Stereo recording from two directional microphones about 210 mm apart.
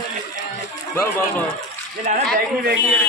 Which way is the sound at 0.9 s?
10° left (ahead or behind).